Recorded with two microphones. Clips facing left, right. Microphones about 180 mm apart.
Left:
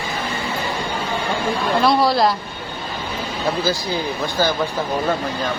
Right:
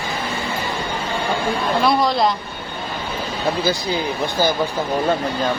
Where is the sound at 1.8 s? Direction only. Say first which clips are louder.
Left 2 dB; 5° left (ahead or behind).